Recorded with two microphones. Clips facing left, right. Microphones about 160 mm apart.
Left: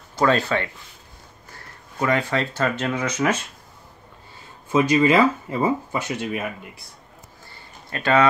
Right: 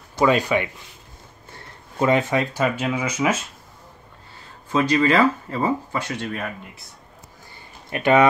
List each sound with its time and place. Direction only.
0.2 s speech: 15° right (ahead or behind)
2.0 s speech: 20° right (ahead or behind)
4.7 s speech: 15° left (ahead or behind)
7.9 s speech: 20° right (ahead or behind)